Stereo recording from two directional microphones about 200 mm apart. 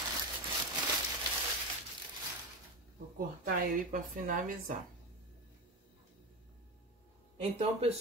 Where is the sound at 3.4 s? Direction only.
40° right (ahead or behind).